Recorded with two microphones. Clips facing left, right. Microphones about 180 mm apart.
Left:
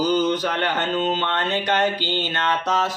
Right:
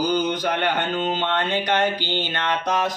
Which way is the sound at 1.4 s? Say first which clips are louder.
Even; 10° right (ahead or behind).